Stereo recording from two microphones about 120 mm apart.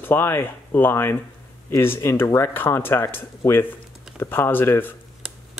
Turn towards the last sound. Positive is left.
turn(degrees=20)  # may be behind; listen again after turning